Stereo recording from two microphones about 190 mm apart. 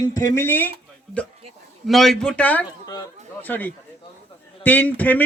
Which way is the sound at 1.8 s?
Centre (ahead or behind).